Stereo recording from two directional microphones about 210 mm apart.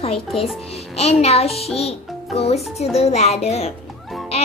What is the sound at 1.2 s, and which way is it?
A child's voice, 30° left (ahead or behind).